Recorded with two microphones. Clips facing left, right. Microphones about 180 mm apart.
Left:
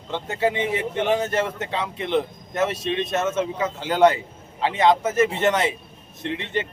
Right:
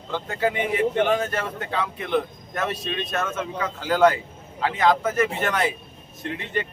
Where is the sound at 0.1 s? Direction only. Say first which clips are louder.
Left 1 dB; 25° left (ahead or behind).